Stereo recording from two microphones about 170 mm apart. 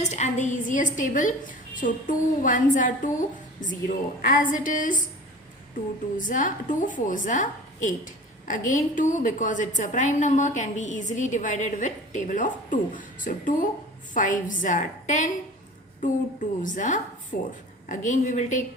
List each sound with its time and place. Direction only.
0.0 s a woman's voice: 40° left (ahead or behind)
6.1 s a woman's voice: 50° left (ahead or behind)